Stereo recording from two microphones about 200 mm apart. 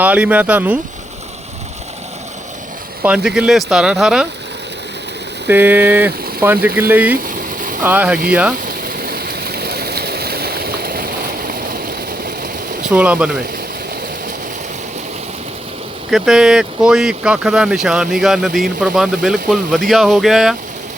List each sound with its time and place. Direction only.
0.0 s speech: 5° right (ahead or behind)
3.0 s speech: 5° right (ahead or behind)
5.5 s speech: 10° right (ahead or behind)
9.0 s stream: 50° right (ahead or behind)
12.8 s speech: 5° right (ahead or behind)
16.0 s speech: centre (ahead or behind)